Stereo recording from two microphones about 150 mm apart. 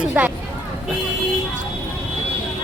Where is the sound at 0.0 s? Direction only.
10° right (ahead or behind).